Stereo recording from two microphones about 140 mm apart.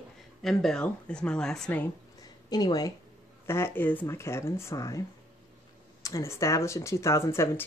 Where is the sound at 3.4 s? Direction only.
15° left (ahead or behind).